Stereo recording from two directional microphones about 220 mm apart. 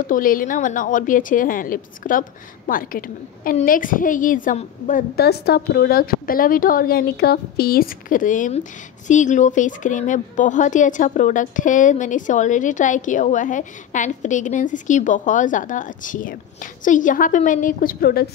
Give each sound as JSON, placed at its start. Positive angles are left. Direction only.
{"t": 0.0, "sound": "a woman's voice", "side_deg": 40}